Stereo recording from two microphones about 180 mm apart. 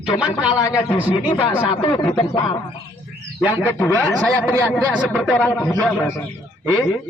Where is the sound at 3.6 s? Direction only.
10° left (ahead or behind).